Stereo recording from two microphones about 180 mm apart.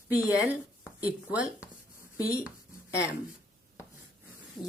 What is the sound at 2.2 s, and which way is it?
Speech, 5° right (ahead or behind).